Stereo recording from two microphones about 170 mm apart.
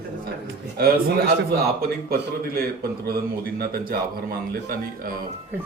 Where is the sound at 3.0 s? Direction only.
65° right (ahead or behind).